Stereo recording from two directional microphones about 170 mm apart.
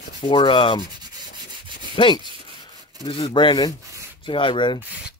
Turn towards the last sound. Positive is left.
turn(degrees=30)  # may be behind; listen again after turning